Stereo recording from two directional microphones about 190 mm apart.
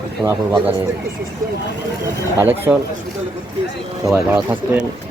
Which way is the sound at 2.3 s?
10° right (ahead or behind).